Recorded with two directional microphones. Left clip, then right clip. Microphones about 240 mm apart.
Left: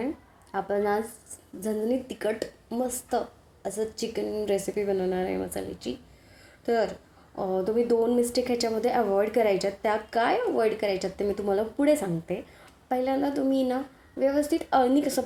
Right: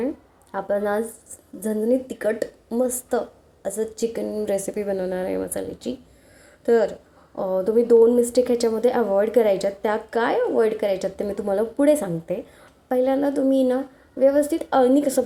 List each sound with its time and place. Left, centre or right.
0.5 s a woman's voice: centre